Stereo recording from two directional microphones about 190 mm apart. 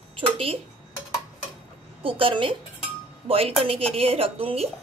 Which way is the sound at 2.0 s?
30° right (ahead or behind).